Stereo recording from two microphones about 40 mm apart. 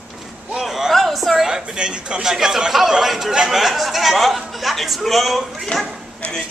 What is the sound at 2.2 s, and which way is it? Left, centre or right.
A man's voice, centre.